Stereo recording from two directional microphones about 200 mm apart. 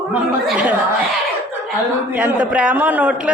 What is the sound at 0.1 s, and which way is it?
A man's voice, 5° right (ahead or behind).